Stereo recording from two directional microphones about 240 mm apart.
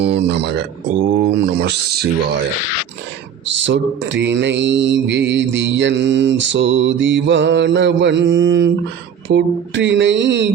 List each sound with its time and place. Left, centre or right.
0.0 s speech: right
1.2 s mantra: right
3.4 s mantra: right